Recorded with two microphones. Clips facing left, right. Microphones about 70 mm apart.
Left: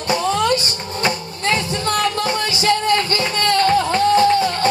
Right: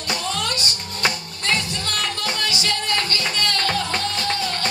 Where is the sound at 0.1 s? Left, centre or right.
Left.